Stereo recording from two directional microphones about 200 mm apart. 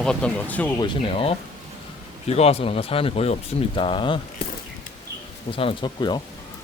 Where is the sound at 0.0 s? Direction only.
5° left (ahead or behind).